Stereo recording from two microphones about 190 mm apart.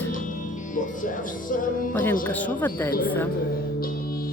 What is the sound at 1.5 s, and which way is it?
Music, 45° left (ahead or behind).